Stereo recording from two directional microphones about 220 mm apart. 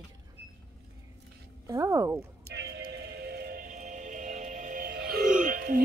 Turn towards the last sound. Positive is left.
turn(degrees=-40)  # may be behind; listen again after turning